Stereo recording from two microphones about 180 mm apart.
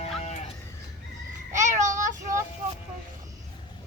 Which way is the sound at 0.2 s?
35° left (ahead or behind).